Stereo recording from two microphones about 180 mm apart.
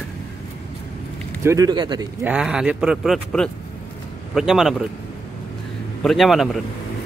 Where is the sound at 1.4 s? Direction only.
15° right (ahead or behind).